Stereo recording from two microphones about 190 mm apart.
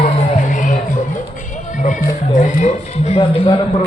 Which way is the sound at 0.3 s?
40° left (ahead or behind).